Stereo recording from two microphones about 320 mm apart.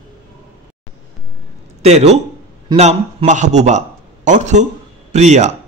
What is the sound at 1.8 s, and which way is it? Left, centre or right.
A man's voice, centre.